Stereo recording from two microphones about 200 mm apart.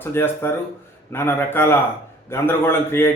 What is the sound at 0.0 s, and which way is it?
Speech, 10° left (ahead or behind).